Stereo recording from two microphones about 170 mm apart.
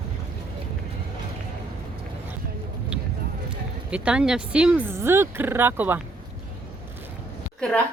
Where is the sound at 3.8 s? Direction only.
5° right (ahead or behind).